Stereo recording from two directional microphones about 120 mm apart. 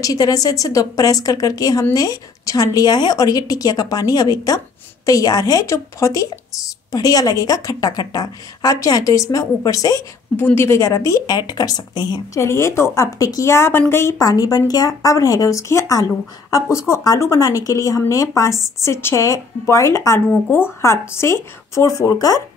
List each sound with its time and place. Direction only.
0.0 s a woman's voice: 30° left (ahead or behind)
10.3 s speech: 20° left (ahead or behind)
20.2 s speech: 10° left (ahead or behind)
21.1 s speech: 20° left (ahead or behind)